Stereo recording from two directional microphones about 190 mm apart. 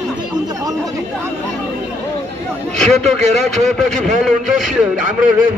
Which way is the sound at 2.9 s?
35° right (ahead or behind).